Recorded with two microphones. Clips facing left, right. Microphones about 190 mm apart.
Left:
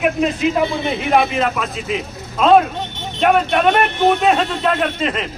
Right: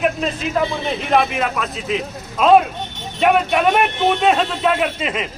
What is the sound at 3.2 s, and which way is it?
A man's voice, 5° right (ahead or behind).